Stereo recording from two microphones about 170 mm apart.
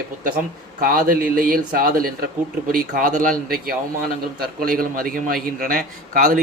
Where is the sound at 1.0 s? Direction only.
60° right (ahead or behind).